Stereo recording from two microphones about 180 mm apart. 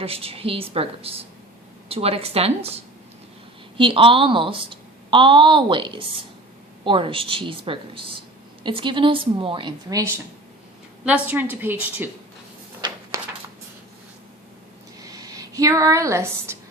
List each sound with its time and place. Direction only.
0.0 s a woman's voice: 30° right (ahead or behind)
3.8 s a woman's voice: 30° right (ahead or behind)
11.0 s a woman's voice: 5° right (ahead or behind)
15.0 s speech: 20° right (ahead or behind)